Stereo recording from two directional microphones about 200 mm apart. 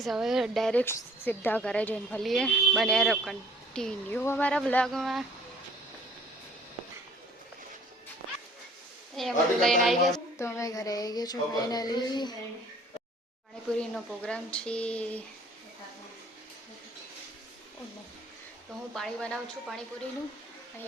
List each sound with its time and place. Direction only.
0.0 s speech: centre (ahead or behind)
9.1 s speech: centre (ahead or behind)
10.3 s speech: 15° left (ahead or behind)
13.7 s speech: 5° left (ahead or behind)
18.9 s speech: 5° left (ahead or behind)